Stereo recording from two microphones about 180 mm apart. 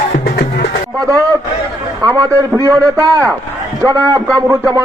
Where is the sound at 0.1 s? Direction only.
60° left (ahead or behind).